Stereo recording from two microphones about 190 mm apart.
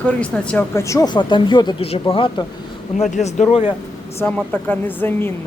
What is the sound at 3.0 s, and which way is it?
Speech, 40° left (ahead or behind).